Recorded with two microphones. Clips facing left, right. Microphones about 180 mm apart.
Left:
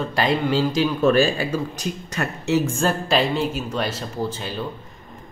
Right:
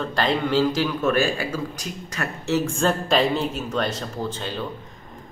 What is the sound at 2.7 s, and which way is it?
A man's voice, centre (ahead or behind).